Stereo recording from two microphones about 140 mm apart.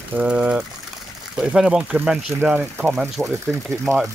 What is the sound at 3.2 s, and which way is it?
Speech, 20° right (ahead or behind).